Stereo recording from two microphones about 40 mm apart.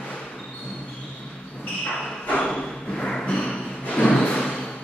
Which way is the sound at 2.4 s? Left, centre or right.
Left.